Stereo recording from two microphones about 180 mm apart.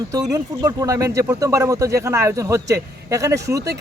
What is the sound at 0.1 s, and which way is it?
Speech, 20° right (ahead or behind).